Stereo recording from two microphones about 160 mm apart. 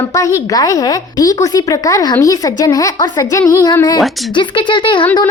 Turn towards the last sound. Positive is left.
turn(degrees=30)  # may be behind; listen again after turning